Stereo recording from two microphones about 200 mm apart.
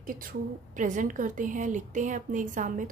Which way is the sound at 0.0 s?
45° right (ahead or behind).